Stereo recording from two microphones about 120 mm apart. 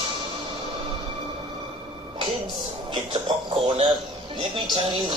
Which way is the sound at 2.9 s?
45° right (ahead or behind).